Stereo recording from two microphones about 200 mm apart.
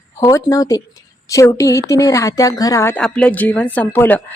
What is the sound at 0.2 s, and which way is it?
Speech, 15° left (ahead or behind).